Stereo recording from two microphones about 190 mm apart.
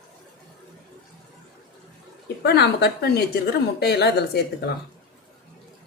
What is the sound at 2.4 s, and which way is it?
Speech, 60° left (ahead or behind).